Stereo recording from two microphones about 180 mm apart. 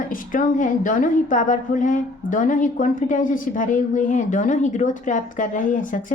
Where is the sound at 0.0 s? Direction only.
50° left (ahead or behind).